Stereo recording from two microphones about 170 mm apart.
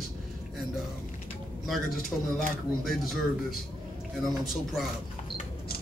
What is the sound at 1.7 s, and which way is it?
Speech, centre (ahead or behind).